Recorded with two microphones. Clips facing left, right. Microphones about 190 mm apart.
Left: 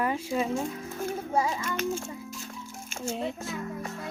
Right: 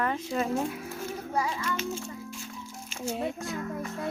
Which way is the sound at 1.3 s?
25° left (ahead or behind).